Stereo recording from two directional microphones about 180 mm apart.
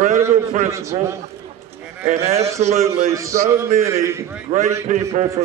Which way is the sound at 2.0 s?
35° right (ahead or behind).